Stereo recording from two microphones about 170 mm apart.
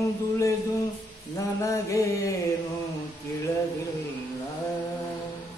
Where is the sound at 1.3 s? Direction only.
20° left (ahead or behind).